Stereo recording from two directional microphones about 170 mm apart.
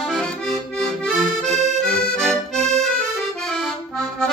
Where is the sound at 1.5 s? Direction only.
40° right (ahead or behind).